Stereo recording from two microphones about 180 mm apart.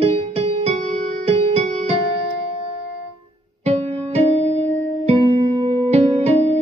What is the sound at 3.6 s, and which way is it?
Music, 35° right (ahead or behind).